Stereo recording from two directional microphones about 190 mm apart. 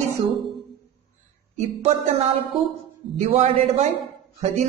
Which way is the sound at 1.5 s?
35° right (ahead or behind).